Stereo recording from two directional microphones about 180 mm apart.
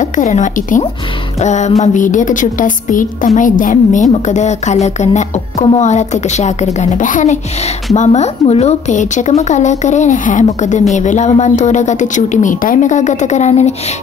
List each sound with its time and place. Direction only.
0.0 s a woman's voice: 45° left (ahead or behind)